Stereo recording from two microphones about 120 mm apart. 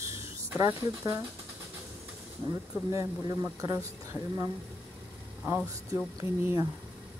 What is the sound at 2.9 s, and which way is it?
Speech, 30° right (ahead or behind).